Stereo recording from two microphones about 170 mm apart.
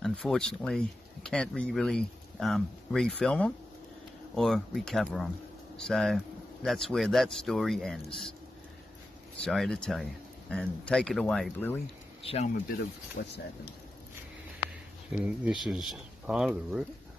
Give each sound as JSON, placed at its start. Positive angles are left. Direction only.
{"t": 0.0, "sound": "speech", "side_deg": 0}
{"t": 9.4, "sound": "speech", "side_deg": 5}
{"t": 12.2, "sound": "speech", "side_deg": 35}
{"t": 13.2, "sound": "speech", "side_deg": 70}
{"t": 15.1, "sound": "speech", "side_deg": -10}